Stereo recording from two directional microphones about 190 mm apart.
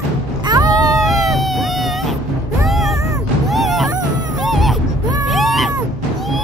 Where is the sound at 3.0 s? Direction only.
15° right (ahead or behind).